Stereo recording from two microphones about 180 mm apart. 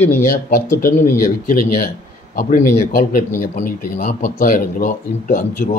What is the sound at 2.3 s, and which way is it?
A man's voice, 50° left (ahead or behind).